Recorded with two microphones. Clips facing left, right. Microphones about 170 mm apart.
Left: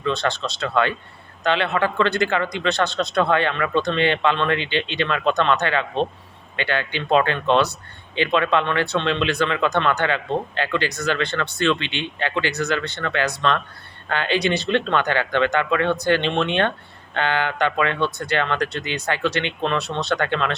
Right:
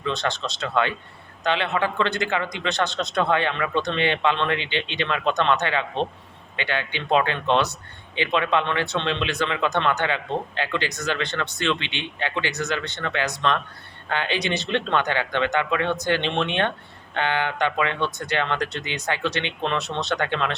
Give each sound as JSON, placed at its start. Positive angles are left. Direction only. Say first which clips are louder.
{"t": 0.0, "sound": "speech", "louder": "left 3 dB", "side_deg": -20}